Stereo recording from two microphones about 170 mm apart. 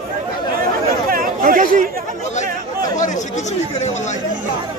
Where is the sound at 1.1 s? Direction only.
55° right (ahead or behind).